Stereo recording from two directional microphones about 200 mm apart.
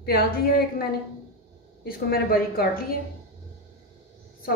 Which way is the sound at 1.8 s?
50° left (ahead or behind).